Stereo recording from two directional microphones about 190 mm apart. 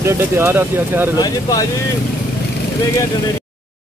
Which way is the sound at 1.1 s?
20° left (ahead or behind).